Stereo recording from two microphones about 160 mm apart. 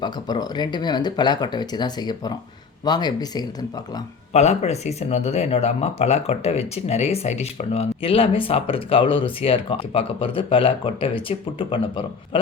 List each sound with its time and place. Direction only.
0.0 s speech: 25° left (ahead or behind)
4.3 s speech: 45° left (ahead or behind)